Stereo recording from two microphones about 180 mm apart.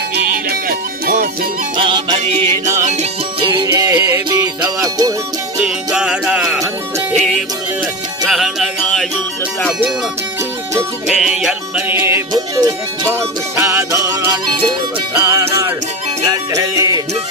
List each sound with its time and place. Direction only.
0.4 s music: 60° right (ahead or behind)
1.7 s music: 25° right (ahead or behind)
3.4 s music: 25° right (ahead or behind)
5.5 s music: 5° right (ahead or behind)
11.2 s music: 5° right (ahead or behind); by 17.0 s 20° right (ahead or behind)